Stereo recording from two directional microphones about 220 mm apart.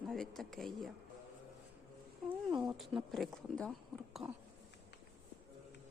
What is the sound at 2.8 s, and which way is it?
A woman's voice, centre (ahead or behind).